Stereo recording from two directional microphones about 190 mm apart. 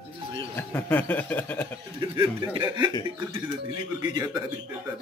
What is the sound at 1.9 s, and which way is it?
Speech, 25° right (ahead or behind).